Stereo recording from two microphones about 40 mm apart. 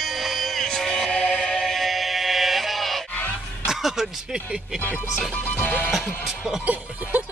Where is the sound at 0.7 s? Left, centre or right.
Centre.